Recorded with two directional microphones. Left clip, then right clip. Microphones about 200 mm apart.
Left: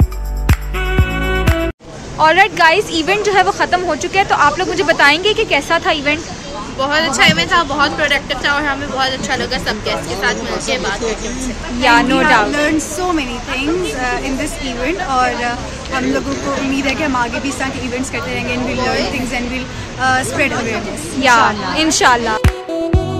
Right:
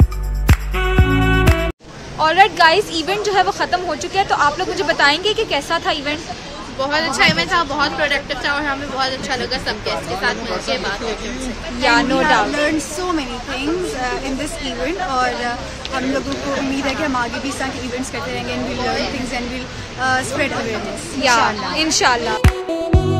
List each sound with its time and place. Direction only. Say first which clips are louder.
0.5 s music: even; centre (ahead or behind)
2.1 s a woman's voice: left 2 dB; 10° left (ahead or behind)
6.8 s a woman's voice: left 3 dB; 15° right (ahead or behind)
11.8 s a woman's voice: left 4 dB; 10° left (ahead or behind)
12.6 s a woman's voice: left 3 dB; 10° right (ahead or behind)
16.8 s a woman's voice: left 4 dB; 20° right (ahead or behind)
19.3 s a woman's voice: left 4 dB; 15° right (ahead or behind)
21.2 s speech: left 4 dB; centre (ahead or behind)